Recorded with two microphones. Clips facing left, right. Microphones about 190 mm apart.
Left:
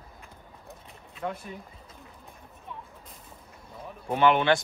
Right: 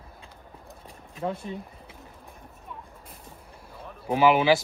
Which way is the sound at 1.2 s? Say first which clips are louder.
Right 4 dB; 30° right (ahead or behind).